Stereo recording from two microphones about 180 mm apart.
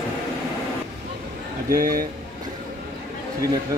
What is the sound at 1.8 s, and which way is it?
Speech, 55° right (ahead or behind).